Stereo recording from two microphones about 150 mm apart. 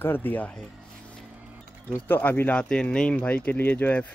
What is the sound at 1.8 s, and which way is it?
Speech, 10° left (ahead or behind).